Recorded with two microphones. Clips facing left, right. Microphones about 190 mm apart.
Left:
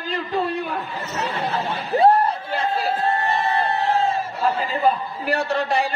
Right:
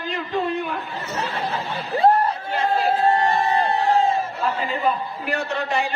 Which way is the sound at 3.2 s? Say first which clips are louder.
Right 2 dB; 15° right (ahead or behind).